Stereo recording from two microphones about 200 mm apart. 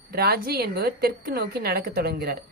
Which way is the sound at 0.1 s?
50° right (ahead or behind).